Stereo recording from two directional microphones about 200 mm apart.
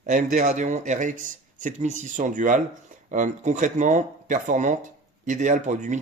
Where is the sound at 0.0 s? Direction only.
40° right (ahead or behind).